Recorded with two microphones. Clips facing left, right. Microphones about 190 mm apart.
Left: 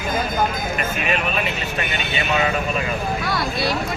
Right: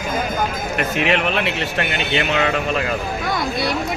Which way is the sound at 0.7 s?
75° right (ahead or behind).